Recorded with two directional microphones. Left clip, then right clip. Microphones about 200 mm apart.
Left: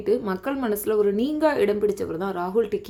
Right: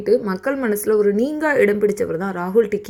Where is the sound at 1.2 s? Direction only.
5° left (ahead or behind).